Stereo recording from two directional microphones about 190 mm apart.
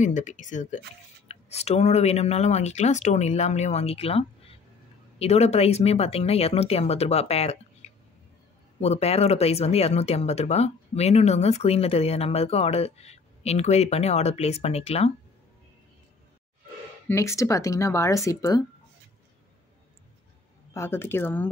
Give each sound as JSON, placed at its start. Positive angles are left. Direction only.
{"t": 0.0, "sound": "speech", "side_deg": 40}
{"t": 7.8, "sound": "music", "side_deg": 35}
{"t": 8.8, "sound": "speech", "side_deg": 35}
{"t": 17.1, "sound": "speech", "side_deg": 15}
{"t": 20.7, "sound": "speech", "side_deg": 15}